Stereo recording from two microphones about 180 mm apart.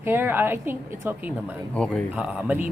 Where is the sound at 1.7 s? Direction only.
5° left (ahead or behind).